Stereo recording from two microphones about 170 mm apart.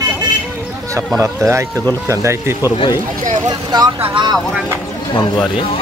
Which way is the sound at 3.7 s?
25° right (ahead or behind).